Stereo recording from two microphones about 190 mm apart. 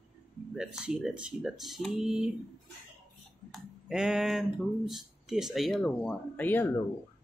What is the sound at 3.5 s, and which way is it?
Speech, 5° right (ahead or behind).